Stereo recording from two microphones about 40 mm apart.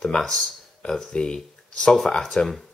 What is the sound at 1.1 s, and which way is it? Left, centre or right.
Speech, centre.